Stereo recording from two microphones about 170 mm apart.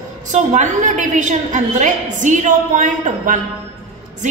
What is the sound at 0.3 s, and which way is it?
A woman's voice, 45° right (ahead or behind).